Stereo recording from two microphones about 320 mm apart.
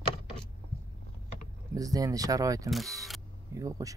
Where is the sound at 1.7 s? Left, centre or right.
Centre.